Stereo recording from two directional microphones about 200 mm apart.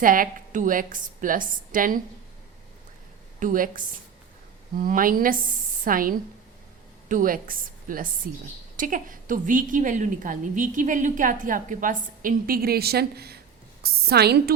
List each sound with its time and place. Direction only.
0.0 s a woman's voice: 45° right (ahead or behind)
3.4 s a woman's voice: 45° right (ahead or behind)